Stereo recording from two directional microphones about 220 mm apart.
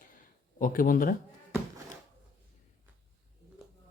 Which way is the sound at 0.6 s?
40° left (ahead or behind).